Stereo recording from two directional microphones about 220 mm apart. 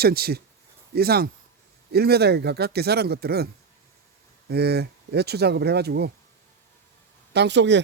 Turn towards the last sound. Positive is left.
turn(degrees=-55)  # may be behind; listen again after turning